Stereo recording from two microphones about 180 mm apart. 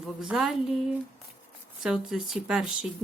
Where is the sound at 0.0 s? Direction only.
5° right (ahead or behind).